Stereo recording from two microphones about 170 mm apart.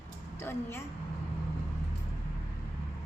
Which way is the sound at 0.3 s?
15° left (ahead or behind).